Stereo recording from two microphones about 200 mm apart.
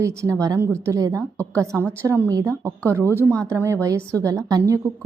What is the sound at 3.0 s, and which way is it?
Speech, 10° left (ahead or behind).